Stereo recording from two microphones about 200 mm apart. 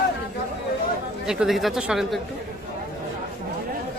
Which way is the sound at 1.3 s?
Centre (ahead or behind).